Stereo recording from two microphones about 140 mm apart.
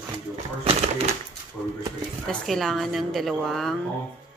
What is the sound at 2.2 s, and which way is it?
Speech, centre (ahead or behind).